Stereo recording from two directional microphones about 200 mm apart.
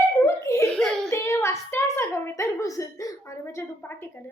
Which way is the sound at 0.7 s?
Centre (ahead or behind).